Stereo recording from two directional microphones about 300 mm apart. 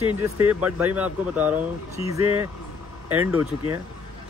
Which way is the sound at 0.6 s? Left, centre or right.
Centre.